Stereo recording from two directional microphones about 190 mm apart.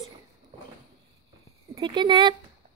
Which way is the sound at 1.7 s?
25° right (ahead or behind).